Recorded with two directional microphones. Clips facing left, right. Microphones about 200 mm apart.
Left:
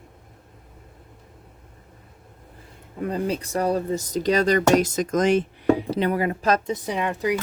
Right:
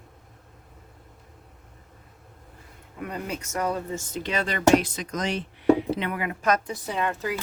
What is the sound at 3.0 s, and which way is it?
Speech, 30° left (ahead or behind).